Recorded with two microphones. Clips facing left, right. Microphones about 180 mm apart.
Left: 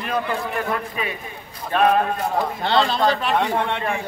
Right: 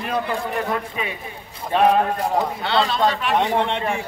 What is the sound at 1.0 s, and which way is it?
A man's voice, 20° right (ahead or behind).